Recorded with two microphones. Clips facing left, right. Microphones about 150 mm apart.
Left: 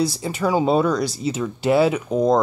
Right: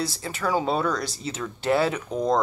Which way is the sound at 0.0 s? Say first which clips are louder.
Left 7 dB; 15° left (ahead or behind).